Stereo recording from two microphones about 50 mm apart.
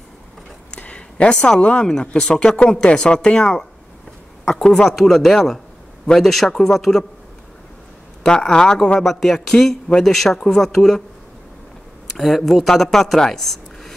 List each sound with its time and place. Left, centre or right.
0.7 s speech: left
4.6 s speech: centre
8.2 s speech: centre
12.1 s speech: centre